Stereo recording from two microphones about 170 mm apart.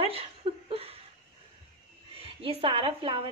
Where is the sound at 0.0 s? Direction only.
35° right (ahead or behind).